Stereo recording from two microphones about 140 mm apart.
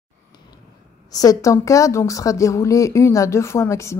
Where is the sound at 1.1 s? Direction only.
25° left (ahead or behind).